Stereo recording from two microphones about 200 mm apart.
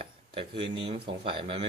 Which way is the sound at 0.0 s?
25° right (ahead or behind).